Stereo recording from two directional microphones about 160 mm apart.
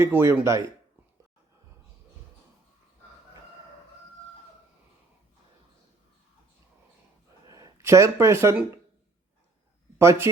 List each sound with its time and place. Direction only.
0.0 s speech: 15° right (ahead or behind)
7.4 s speech: 20° right (ahead or behind)
10.0 s speech: 15° right (ahead or behind)